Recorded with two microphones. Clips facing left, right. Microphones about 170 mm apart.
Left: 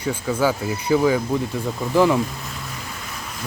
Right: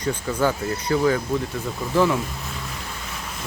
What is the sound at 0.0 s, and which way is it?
Speech, 5° left (ahead or behind).